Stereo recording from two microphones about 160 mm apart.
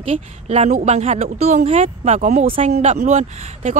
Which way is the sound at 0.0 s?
40° right (ahead or behind).